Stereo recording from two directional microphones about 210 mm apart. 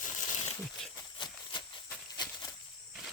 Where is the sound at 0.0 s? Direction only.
35° left (ahead or behind).